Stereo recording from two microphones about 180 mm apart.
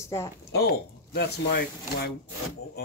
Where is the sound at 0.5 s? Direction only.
65° left (ahead or behind).